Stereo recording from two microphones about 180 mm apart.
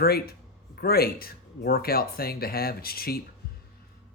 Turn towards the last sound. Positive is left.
turn(degrees=60)  # may be behind; listen again after turning